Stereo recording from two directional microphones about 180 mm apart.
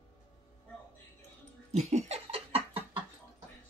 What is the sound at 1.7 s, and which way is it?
Laughter, 40° right (ahead or behind).